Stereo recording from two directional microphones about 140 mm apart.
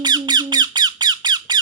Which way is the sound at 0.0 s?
30° right (ahead or behind).